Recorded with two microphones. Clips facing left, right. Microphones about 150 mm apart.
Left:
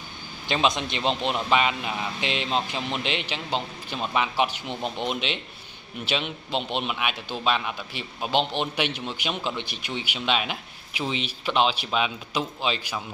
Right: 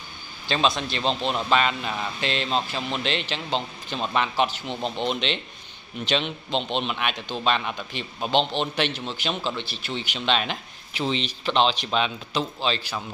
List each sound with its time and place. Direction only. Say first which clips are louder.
0.5 s speech: even; 20° left (ahead or behind)